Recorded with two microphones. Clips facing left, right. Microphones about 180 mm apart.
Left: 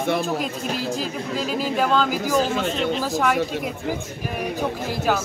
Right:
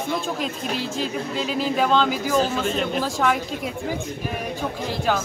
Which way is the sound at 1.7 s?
5° left (ahead or behind).